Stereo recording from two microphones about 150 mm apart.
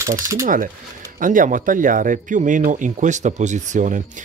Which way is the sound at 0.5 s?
65° right (ahead or behind).